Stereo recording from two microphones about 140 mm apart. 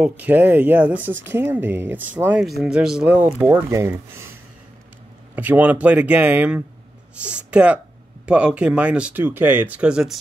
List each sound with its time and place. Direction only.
0.0 s speech: 10° right (ahead or behind)
5.3 s speech: 10° right (ahead or behind)